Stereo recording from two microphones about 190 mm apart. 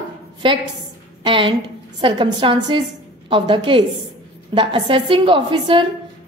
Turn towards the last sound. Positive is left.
turn(degrees=-25)  # may be behind; listen again after turning